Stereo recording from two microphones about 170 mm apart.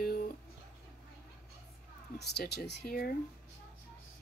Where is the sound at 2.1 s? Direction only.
75° left (ahead or behind).